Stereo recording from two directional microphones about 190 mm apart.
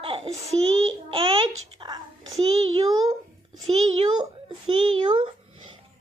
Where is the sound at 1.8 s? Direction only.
20° right (ahead or behind).